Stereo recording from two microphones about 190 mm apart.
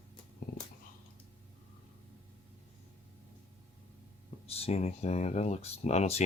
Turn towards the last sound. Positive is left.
turn(degrees=35)  # may be behind; listen again after turning